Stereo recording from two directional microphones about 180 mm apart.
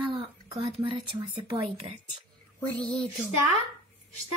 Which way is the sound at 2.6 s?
5° left (ahead or behind).